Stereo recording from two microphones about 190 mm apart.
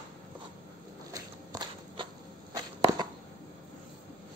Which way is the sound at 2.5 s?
20° right (ahead or behind).